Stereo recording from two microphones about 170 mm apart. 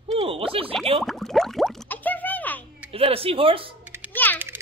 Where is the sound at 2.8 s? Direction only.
35° right (ahead or behind).